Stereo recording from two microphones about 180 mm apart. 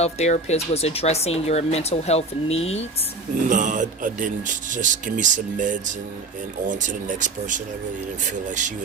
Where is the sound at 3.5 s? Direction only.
45° right (ahead or behind).